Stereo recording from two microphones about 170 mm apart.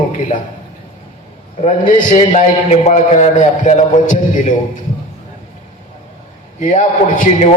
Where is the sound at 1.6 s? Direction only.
50° left (ahead or behind).